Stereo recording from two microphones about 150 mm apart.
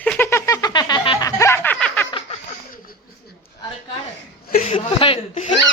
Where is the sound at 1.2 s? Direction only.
20° left (ahead or behind).